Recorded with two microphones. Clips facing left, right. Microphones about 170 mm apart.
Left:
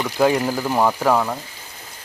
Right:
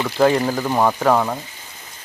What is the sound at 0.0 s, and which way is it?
Speech, 10° left (ahead or behind).